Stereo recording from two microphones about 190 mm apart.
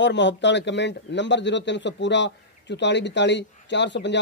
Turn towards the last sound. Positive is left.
turn(degrees=70)  # may be behind; listen again after turning